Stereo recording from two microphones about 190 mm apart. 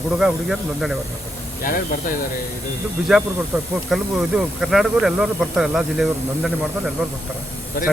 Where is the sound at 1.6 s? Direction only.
50° left (ahead or behind).